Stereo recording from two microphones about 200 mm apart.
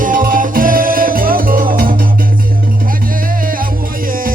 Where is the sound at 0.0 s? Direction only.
45° right (ahead or behind).